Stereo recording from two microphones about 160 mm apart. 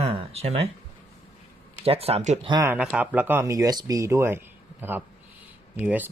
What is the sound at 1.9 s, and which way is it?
Speech, 40° right (ahead or behind).